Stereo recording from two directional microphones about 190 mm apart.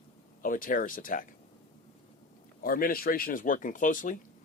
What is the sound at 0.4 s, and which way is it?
Speech, 45° left (ahead or behind).